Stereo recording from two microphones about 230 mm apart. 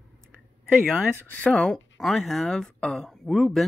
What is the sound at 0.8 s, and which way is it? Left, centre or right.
Speech, centre.